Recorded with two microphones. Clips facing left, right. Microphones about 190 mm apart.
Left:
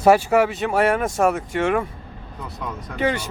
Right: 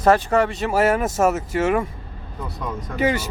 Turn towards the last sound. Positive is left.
turn(degrees=-5)  # may be behind; listen again after turning